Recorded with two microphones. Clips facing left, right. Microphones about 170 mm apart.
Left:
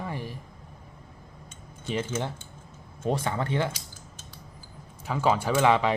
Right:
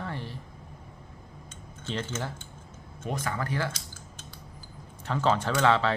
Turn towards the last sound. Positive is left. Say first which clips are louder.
# left 2 dB
turn(degrees=15)  # may be behind; listen again after turning